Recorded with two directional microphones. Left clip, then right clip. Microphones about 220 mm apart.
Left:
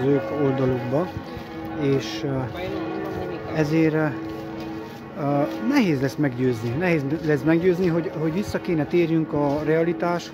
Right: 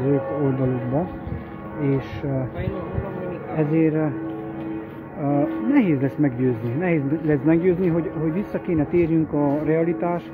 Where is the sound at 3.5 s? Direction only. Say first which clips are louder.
Even; 20° left (ahead or behind).